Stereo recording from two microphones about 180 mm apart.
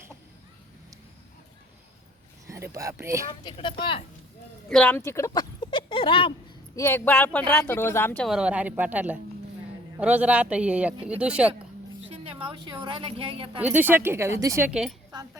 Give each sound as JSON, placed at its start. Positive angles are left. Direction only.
{"t": 2.5, "sound": "speech", "side_deg": -15}
{"t": 3.4, "sound": "speech", "side_deg": 25}
{"t": 4.7, "sound": "speech", "side_deg": 10}
{"t": 6.7, "sound": "speech", "side_deg": 15}
{"t": 12.0, "sound": "a woman's voice", "side_deg": -30}
{"t": 13.6, "sound": "speech", "side_deg": -10}
{"t": 14.7, "sound": "a woman's voice", "side_deg": -5}